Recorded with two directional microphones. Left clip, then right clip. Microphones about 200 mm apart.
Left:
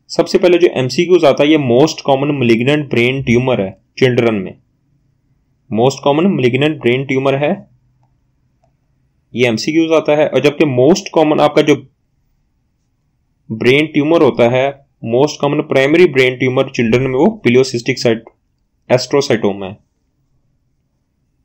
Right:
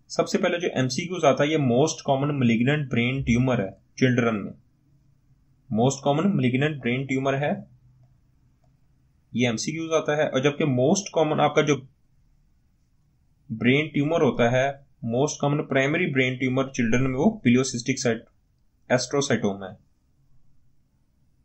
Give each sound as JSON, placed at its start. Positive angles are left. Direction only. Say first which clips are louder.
{"t": 0.1, "sound": "speech", "louder": "left 13 dB", "side_deg": 25}
{"t": 5.7, "sound": "speech", "louder": "left 11 dB", "side_deg": 25}
{"t": 9.3, "sound": "speech", "louder": "left 13 dB", "side_deg": 25}
{"t": 13.6, "sound": "speech", "louder": "left 11 dB", "side_deg": 25}